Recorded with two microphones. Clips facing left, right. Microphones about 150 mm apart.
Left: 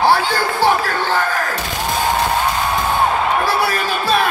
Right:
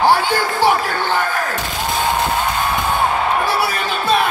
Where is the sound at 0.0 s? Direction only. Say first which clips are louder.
Even; 15° right (ahead or behind).